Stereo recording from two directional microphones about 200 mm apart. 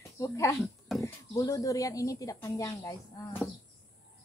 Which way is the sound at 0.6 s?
Centre (ahead or behind).